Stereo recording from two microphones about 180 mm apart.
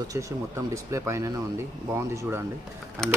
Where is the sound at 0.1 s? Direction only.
15° right (ahead or behind).